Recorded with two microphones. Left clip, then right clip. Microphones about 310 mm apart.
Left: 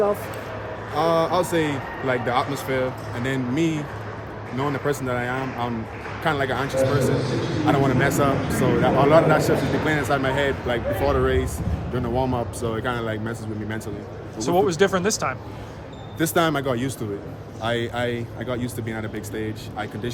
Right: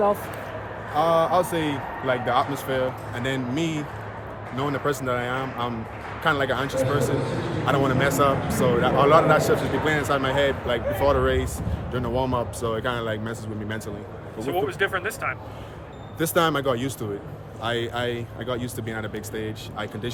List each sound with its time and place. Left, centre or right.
0.9 s a man's voice: centre
14.4 s speech: centre
16.1 s a man's voice: centre